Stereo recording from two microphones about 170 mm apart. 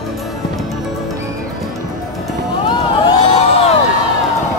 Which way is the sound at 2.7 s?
30° left (ahead or behind).